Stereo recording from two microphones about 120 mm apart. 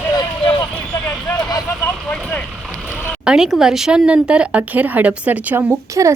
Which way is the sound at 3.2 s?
5° right (ahead or behind).